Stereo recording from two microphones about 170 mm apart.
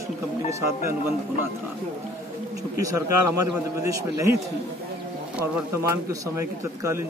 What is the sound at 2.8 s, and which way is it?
A man's voice, 20° right (ahead or behind).